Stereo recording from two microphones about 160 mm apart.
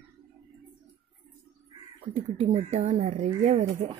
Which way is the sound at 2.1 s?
45° right (ahead or behind).